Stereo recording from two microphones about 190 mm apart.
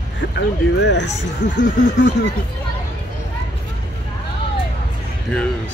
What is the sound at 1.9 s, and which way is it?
Speech, 70° left (ahead or behind).